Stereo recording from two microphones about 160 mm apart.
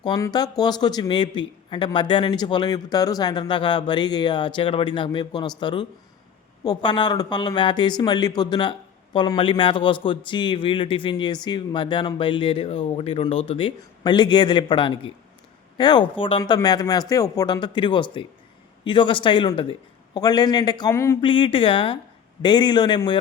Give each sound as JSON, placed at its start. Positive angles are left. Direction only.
{"t": 0.0, "sound": "a man's voice", "side_deg": 25}
{"t": 21.2, "sound": "a man's voice", "side_deg": 30}